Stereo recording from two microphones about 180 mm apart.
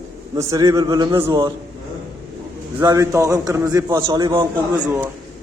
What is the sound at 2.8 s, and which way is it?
A man's voice, 20° right (ahead or behind).